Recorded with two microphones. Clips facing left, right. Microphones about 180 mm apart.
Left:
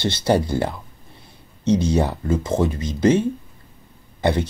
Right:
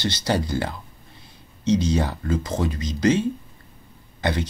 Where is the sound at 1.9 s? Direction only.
25° left (ahead or behind).